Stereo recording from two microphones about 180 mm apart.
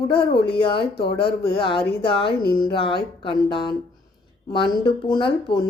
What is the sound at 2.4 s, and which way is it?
Speech, 55° left (ahead or behind).